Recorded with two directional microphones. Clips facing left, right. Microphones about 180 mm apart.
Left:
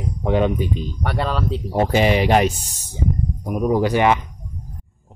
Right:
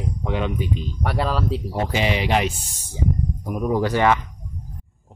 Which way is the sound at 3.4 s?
20° left (ahead or behind).